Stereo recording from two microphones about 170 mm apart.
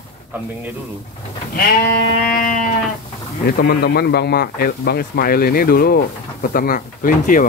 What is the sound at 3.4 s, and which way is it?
A man's voice, 65° left (ahead or behind).